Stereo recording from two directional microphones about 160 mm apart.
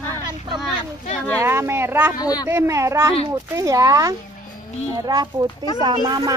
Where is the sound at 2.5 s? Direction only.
15° right (ahead or behind).